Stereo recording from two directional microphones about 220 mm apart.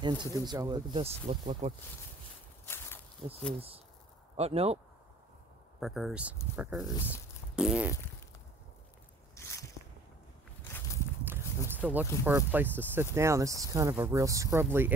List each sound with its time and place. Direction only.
0.0 s speech: 20° right (ahead or behind)
2.6 s a sound: 10° left (ahead or behind)
3.2 s speech: 20° right (ahead or behind)
5.8 s speech: centre (ahead or behind)
9.3 s biting: 15° left (ahead or behind)
11.7 s speech: 10° right (ahead or behind)